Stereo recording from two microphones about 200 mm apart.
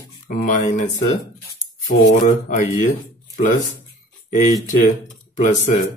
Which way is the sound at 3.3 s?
40° left (ahead or behind).